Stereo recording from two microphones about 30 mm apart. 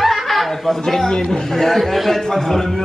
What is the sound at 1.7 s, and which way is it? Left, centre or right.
A woman's voice, centre.